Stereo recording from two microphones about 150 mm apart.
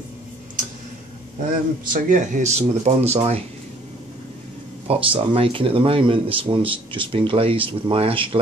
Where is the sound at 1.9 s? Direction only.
60° right (ahead or behind).